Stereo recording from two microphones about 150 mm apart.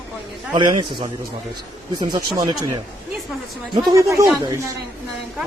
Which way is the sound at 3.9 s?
20° right (ahead or behind).